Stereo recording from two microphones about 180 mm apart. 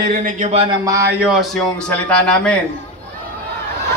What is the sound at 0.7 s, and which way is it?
Speech, 20° right (ahead or behind).